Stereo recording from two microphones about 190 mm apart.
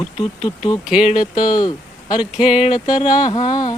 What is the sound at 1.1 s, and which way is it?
Speech, 25° left (ahead or behind).